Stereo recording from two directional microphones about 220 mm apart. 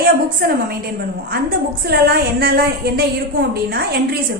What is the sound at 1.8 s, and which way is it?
A woman's voice, 45° right (ahead or behind).